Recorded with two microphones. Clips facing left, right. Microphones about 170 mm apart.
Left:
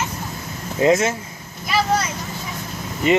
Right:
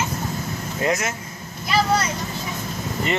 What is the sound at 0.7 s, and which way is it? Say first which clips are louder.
Speech: left 7 dB; 25° left (ahead or behind).